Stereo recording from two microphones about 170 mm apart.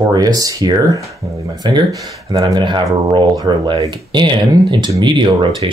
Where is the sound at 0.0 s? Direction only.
20° right (ahead or behind).